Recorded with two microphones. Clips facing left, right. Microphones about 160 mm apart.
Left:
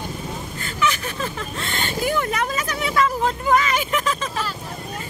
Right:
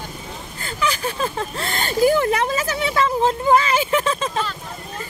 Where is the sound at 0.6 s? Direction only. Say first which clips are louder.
Right 1 dB; 35° right (ahead or behind).